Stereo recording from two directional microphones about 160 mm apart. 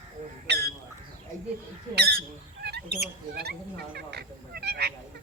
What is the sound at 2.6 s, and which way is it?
Bird, 90° right.